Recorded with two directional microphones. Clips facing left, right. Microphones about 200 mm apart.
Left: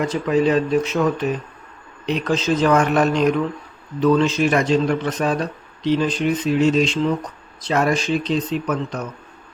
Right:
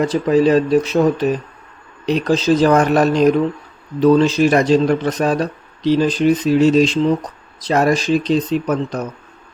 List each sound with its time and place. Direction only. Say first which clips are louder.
0.1 s speech: right 4 dB; 35° right (ahead or behind)